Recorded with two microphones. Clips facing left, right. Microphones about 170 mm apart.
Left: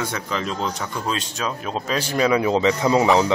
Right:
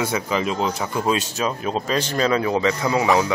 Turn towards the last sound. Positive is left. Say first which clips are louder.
# left 2 dB
turn(degrees=20)  # may be behind; listen again after turning